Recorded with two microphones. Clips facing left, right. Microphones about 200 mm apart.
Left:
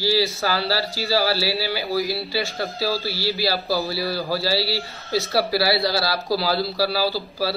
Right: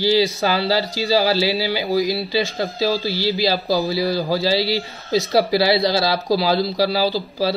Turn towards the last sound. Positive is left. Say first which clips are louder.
# right 4 dB
turn(degrees=-20)  # may be behind; listen again after turning